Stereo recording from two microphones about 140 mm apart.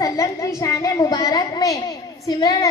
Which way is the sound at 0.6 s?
25° left (ahead or behind).